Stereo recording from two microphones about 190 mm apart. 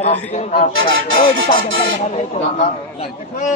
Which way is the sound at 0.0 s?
35° left (ahead or behind).